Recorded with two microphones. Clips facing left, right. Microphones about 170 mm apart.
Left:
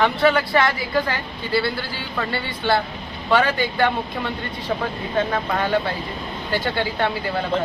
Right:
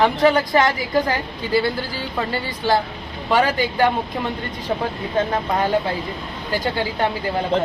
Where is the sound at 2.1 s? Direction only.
15° right (ahead or behind).